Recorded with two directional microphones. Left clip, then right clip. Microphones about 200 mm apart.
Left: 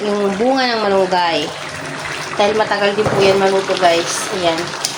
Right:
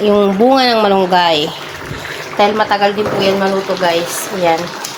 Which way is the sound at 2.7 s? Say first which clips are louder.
Right 4 dB; 35° right (ahead or behind).